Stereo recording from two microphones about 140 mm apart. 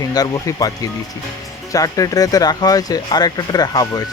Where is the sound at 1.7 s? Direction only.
25° left (ahead or behind).